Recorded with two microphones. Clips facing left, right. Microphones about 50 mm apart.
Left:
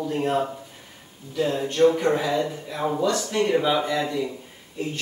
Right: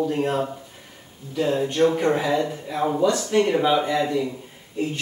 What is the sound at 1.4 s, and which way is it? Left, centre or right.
Speech, centre.